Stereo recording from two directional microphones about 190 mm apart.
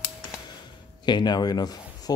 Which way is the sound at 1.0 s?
25° left (ahead or behind).